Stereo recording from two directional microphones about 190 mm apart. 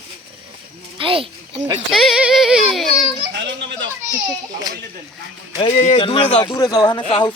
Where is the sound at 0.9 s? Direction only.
30° right (ahead or behind).